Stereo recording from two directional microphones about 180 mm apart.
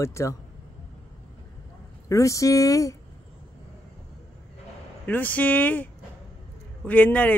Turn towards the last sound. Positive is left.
turn(degrees=10)  # may be behind; listen again after turning